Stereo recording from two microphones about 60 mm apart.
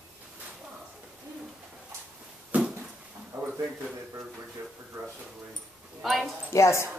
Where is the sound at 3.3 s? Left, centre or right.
Right.